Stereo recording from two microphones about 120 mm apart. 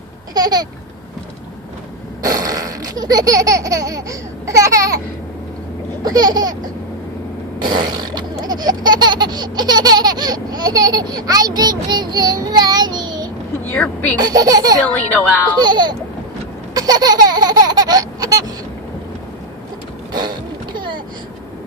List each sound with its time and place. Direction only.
0.3 s speech: 35° right (ahead or behind)
2.2 s speech: 30° right (ahead or behind)
6.1 s speech: 35° right (ahead or behind)
7.6 s laughter: 35° right (ahead or behind)
13.7 s a woman's voice: 10° left (ahead or behind)
14.2 s speech: 35° right (ahead or behind)
16.7 s baby laughter: 35° right (ahead or behind)
20.7 s vehicle: 40° right (ahead or behind)